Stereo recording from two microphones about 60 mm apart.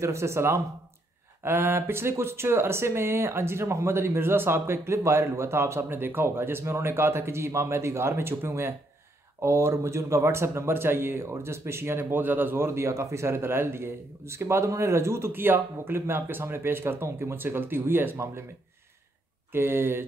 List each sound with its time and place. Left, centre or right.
0.0 s speech: right
1.4 s speech: right
19.5 s speech: right